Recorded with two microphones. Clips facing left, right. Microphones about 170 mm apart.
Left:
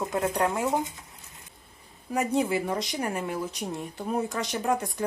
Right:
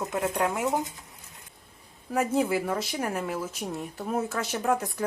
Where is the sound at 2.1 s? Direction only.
Centre (ahead or behind).